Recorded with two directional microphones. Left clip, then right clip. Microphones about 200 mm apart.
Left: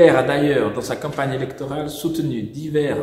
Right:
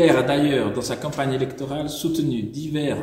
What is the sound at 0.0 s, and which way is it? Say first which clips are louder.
Speech: left 4 dB; centre (ahead or behind).